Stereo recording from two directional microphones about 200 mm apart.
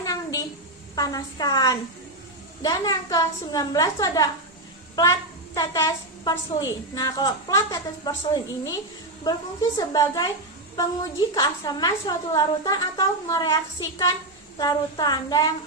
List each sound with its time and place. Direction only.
0.0 s a sound: 15° left (ahead or behind)
0.9 s a woman's voice: 20° left (ahead or behind)
5.5 s a woman's voice: 20° left (ahead or behind)